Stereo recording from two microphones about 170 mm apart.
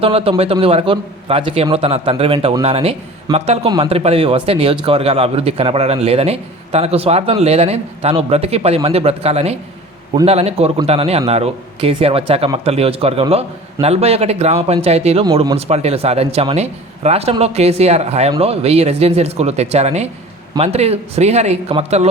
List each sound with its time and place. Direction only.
0.0 s a man's voice: 35° right (ahead or behind)